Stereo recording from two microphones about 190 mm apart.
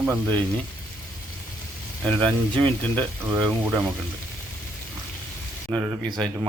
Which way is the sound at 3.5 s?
10° right (ahead or behind).